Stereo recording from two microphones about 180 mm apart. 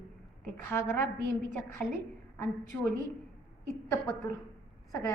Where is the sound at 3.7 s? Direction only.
15° left (ahead or behind).